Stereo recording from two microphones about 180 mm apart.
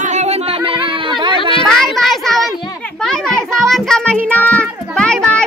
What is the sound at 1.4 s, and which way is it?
Speech, 30° left (ahead or behind).